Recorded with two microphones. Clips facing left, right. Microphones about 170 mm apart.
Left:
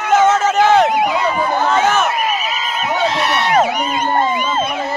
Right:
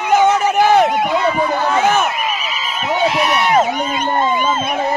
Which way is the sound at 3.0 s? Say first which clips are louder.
Right 2 dB; 15° right (ahead or behind).